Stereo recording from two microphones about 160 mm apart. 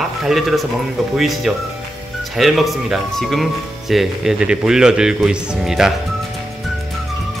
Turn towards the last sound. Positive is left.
turn(degrees=-5)  # may be behind; listen again after turning